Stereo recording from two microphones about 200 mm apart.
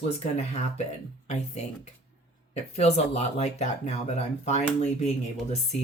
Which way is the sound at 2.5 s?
35° left (ahead or behind).